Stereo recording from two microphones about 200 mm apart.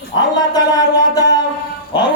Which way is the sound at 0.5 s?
20° left (ahead or behind).